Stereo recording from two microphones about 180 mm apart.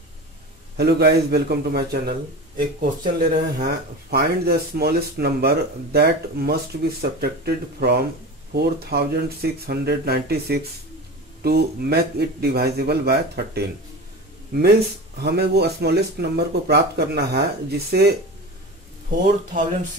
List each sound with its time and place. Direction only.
0.7 s speech: 65° right (ahead or behind)